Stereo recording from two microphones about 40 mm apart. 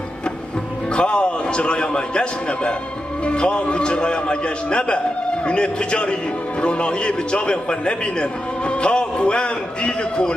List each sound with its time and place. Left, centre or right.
0.9 s a man's voice: left